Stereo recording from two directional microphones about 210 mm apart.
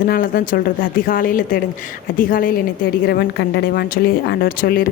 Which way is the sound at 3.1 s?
55° left (ahead or behind).